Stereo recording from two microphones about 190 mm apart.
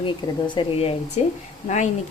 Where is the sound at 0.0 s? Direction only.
25° left (ahead or behind).